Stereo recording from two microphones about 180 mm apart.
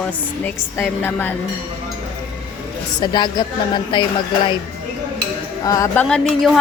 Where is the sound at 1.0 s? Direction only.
10° left (ahead or behind).